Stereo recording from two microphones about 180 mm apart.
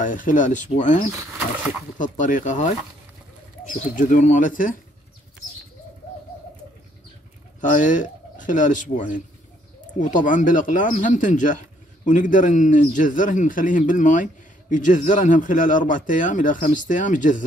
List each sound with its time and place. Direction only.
0.0 s a man's voice: 45° left (ahead or behind)
7.6 s a man's voice: 45° left (ahead or behind)